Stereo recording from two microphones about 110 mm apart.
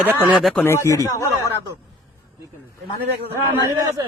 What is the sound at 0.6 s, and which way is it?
Speech, 25° left (ahead or behind).